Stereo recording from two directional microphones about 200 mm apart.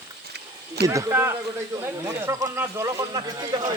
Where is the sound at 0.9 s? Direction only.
15° right (ahead or behind).